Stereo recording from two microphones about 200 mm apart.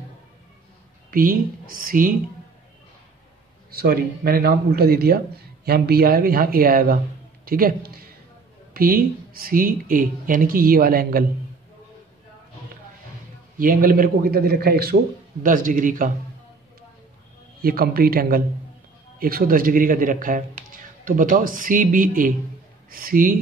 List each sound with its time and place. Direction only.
1.1 s a man's voice: 45° right (ahead or behind)
3.7 s a man's voice: 50° right (ahead or behind)
13.6 s a man's voice: 45° right (ahead or behind)
17.6 s a man's voice: 50° right (ahead or behind)